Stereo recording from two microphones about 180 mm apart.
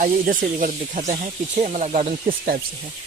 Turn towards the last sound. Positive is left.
turn(degrees=-45)  # may be behind; listen again after turning